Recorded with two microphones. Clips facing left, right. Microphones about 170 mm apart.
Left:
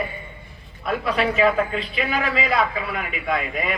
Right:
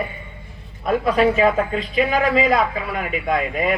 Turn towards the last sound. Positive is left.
turn(degrees=-40)  # may be behind; listen again after turning